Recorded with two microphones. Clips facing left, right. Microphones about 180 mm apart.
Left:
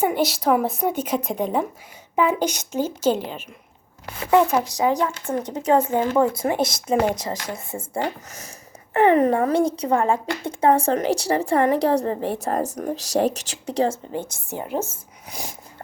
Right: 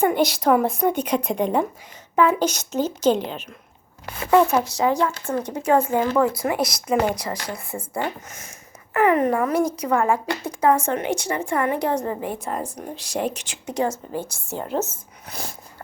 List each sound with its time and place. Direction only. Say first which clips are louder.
0.0 s a woman's voice: right 2 dB; 5° left (ahead or behind)
2.1 s a woman's voice: right 2 dB; 15° left (ahead or behind)
8.3 s speech: left 2 dB; 35° left (ahead or behind); by 15.5 s 15° left (ahead or behind)